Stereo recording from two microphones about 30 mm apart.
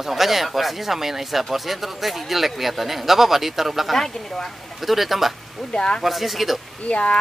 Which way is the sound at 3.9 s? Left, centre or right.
Centre.